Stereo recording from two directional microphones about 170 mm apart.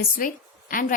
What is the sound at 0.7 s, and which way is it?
Speech, 50° left (ahead or behind).